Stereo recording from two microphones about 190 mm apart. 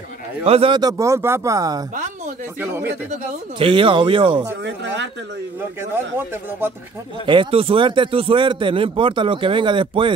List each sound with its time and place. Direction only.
0.5 s speech: 30° right (ahead or behind); by 2.9 s 10° right (ahead or behind)
3.1 s speech: 30° right (ahead or behind)
4.6 s speech: 70° right (ahead or behind)
5.8 s speech: 10° right (ahead or behind)
7.2 s speech: 30° right (ahead or behind)